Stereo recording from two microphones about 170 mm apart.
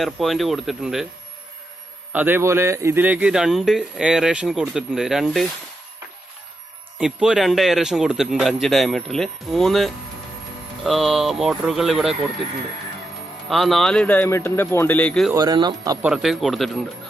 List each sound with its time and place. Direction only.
0.0 s speech: centre (ahead or behind)
2.1 s speech: 10° right (ahead or behind)
7.0 s speech: 5° right (ahead or behind)
13.5 s speech: centre (ahead or behind)
15.3 s speech: 25° right (ahead or behind)
16.0 s speech: 5° right (ahead or behind)